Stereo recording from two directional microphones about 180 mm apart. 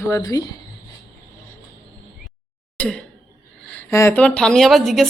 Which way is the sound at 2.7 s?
5° left (ahead or behind).